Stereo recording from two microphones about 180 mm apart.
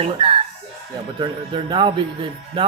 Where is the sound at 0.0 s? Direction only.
30° right (ahead or behind).